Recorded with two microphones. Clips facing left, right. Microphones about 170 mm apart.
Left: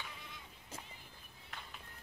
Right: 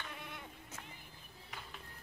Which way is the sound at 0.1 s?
60° right (ahead or behind).